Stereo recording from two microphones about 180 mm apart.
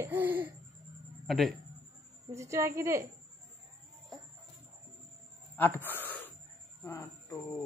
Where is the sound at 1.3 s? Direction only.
Centre (ahead or behind).